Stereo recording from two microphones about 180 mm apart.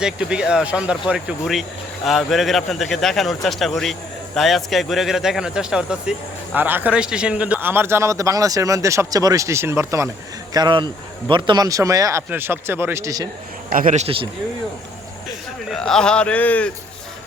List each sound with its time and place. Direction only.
0.0 s a man's voice: 5° right (ahead or behind)
13.7 s a man's voice: 45° right (ahead or behind)
15.7 s speech: 5° left (ahead or behind)